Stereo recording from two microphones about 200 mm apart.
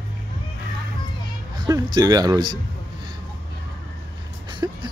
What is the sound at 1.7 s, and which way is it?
Speech, 20° right (ahead or behind).